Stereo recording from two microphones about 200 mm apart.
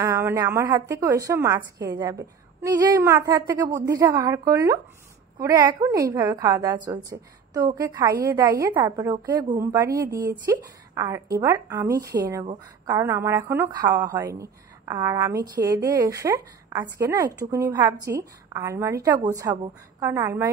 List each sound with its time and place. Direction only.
0.0 s speech: 15° right (ahead or behind)